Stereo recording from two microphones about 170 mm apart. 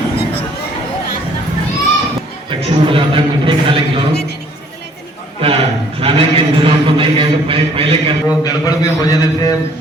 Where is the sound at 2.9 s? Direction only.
30° right (ahead or behind).